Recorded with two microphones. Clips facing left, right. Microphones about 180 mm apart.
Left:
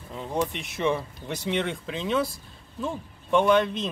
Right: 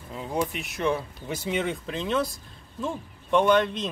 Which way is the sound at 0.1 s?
Centre (ahead or behind).